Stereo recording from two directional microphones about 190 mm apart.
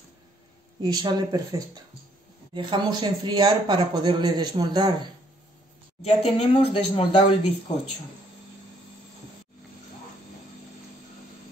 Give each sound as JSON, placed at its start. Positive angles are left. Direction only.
{"t": 0.7, "sound": "speech", "side_deg": -20}
{"t": 6.0, "sound": "speech", "side_deg": 30}